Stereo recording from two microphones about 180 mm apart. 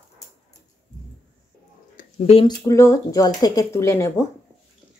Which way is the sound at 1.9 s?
40° left (ahead or behind).